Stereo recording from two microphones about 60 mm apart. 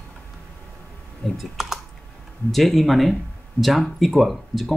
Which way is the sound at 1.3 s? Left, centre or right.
Centre.